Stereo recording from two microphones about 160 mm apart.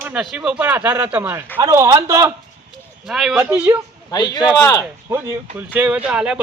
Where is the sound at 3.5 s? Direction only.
15° right (ahead or behind).